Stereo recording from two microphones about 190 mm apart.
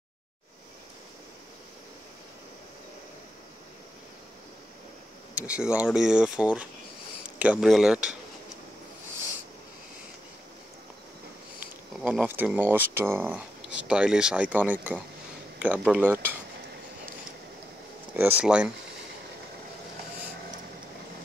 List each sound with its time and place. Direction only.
5.3 s speech: 5° right (ahead or behind)
12.0 s speech: 5° right (ahead or behind)
18.4 s speech: 5° right (ahead or behind)